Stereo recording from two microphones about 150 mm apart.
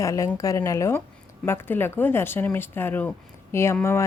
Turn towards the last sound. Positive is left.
turn(degrees=15)  # may be behind; listen again after turning